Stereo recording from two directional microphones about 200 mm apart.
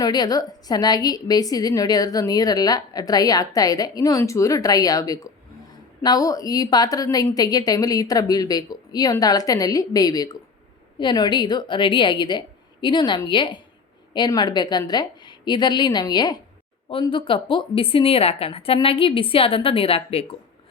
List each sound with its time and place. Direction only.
0.0 s a woman's voice: 20° left (ahead or behind)